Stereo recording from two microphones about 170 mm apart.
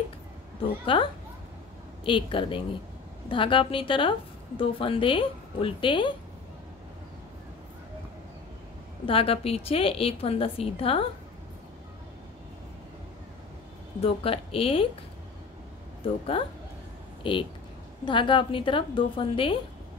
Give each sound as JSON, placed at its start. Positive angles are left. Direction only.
{"t": 0.9, "sound": "a woman's voice", "side_deg": 30}
{"t": 9.0, "sound": "a woman's voice", "side_deg": 35}
{"t": 14.0, "sound": "a woman's voice", "side_deg": 35}
{"t": 16.0, "sound": "a woman's voice", "side_deg": 30}